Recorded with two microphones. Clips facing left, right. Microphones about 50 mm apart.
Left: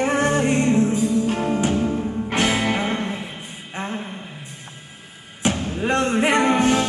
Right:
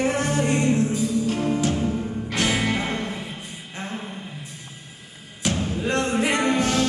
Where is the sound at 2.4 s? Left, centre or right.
Centre.